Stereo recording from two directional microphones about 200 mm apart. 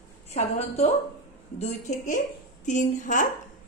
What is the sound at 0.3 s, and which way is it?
A woman's voice, 30° left (ahead or behind).